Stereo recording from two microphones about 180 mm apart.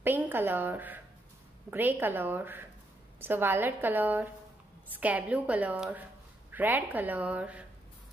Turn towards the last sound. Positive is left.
turn(degrees=-5)  # may be behind; listen again after turning